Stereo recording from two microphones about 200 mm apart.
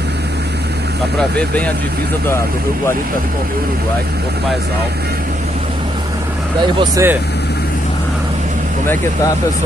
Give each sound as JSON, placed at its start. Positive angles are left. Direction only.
{"t": 6.8, "sound": "speech", "side_deg": -15}